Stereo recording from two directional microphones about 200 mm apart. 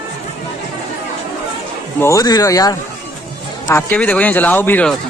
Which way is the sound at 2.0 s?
15° left (ahead or behind).